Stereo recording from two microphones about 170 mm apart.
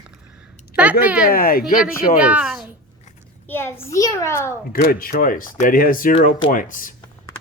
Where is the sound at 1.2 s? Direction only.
60° left (ahead or behind).